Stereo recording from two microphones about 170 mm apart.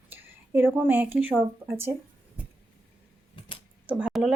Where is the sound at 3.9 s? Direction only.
10° right (ahead or behind).